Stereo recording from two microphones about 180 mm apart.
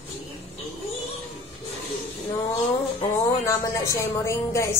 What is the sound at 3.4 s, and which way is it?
Speech, 15° left (ahead or behind).